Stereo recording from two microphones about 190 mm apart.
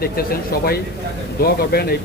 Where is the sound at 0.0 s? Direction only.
55° left (ahead or behind).